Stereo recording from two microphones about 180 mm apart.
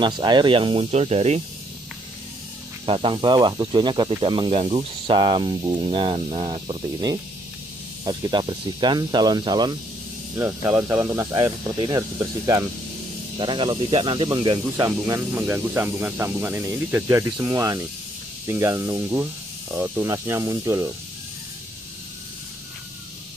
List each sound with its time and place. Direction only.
0.0 s speech: 25° right (ahead or behind)
2.9 s speech: 30° right (ahead or behind)